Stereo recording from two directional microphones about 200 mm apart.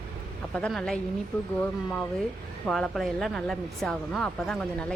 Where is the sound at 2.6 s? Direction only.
Centre (ahead or behind).